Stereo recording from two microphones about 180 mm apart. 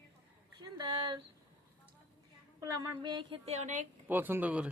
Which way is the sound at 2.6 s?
20° right (ahead or behind).